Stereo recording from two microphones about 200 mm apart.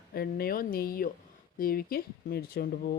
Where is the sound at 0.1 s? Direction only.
50° left (ahead or behind).